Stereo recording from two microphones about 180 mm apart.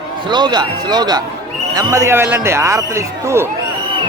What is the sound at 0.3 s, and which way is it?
A man's voice, 25° right (ahead or behind).